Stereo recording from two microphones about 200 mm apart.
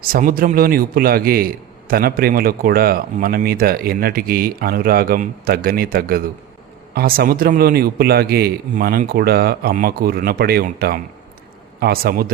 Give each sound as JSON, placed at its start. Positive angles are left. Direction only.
{"t": 0.0, "sound": "a man's voice", "side_deg": -45}